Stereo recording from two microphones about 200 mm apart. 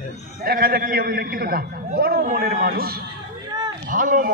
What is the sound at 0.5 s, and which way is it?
A man's voice, 50° right (ahead or behind).